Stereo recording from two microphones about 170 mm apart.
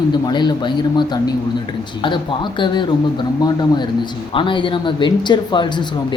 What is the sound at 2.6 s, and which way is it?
Speech, 25° left (ahead or behind).